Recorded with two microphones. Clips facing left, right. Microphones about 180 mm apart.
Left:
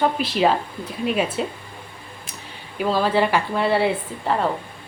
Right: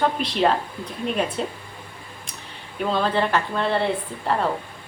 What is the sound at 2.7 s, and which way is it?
A woman's voice, 5° left (ahead or behind).